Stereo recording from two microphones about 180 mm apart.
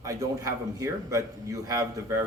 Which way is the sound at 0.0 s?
15° right (ahead or behind).